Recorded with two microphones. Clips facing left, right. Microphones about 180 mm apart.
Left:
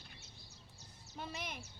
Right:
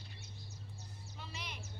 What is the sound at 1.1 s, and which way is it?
Speech, 50° left (ahead or behind).